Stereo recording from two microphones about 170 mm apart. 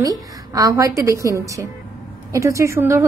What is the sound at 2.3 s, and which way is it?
Speech, 20° right (ahead or behind).